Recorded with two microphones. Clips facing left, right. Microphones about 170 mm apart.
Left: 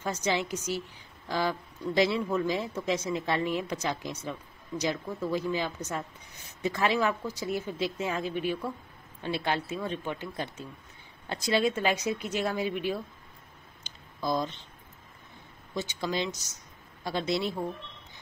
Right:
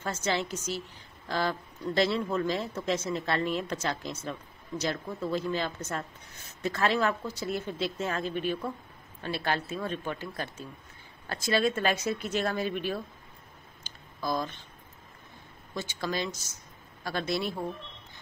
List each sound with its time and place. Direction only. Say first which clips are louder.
0.0 s a man's voice: left 1 dB; 15° left (ahead or behind)
13.8 s a sound: left 2 dB; 20° left (ahead or behind)
16.0 s a man's voice: even; 20° left (ahead or behind)